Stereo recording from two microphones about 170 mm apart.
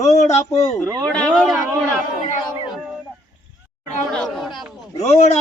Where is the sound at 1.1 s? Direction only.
Centre (ahead or behind).